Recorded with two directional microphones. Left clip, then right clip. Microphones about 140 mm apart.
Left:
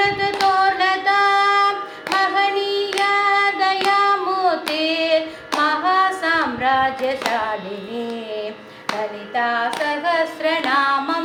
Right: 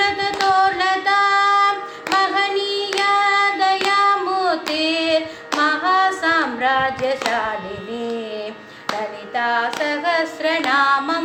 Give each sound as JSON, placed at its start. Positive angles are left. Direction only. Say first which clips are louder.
{"t": 0.6, "sound": "female singing", "louder": "even", "side_deg": -20}
{"t": 2.1, "sound": "child singing", "louder": "even", "side_deg": -15}
{"t": 9.3, "sound": "a sound", "louder": "right 1 dB", "side_deg": -20}